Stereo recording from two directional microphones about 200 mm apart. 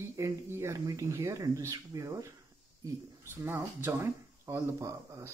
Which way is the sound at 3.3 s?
10° right (ahead or behind).